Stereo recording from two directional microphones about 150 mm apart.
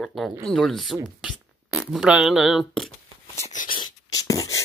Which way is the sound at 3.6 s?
30° left (ahead or behind).